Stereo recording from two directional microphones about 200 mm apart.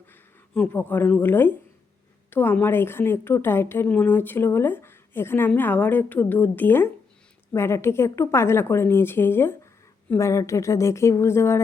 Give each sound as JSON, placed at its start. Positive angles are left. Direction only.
{"t": 0.1, "sound": "a woman's voice", "side_deg": 5}